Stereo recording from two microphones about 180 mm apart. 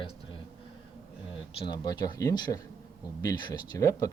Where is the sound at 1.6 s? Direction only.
25° left (ahead or behind).